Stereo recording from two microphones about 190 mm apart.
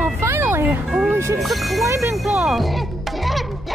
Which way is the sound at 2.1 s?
5° right (ahead or behind).